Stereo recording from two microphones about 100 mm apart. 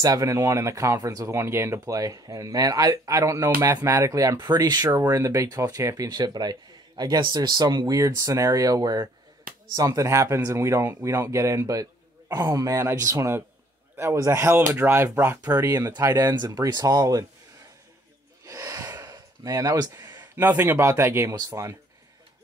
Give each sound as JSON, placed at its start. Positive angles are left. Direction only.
{"t": 0.0, "sound": "speech", "side_deg": -35}
{"t": 15.4, "sound": "speech", "side_deg": -35}
{"t": 18.4, "sound": "gasp", "side_deg": -30}
{"t": 20.2, "sound": "speech", "side_deg": -20}